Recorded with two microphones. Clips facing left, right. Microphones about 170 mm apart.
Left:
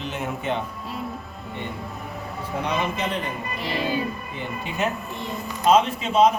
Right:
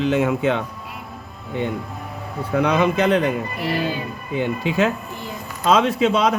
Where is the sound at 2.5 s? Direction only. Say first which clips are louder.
Right 8 dB; 80° right.